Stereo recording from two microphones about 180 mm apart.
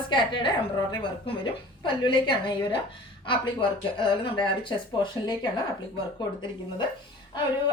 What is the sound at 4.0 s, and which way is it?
A woman's voice, 25° left (ahead or behind).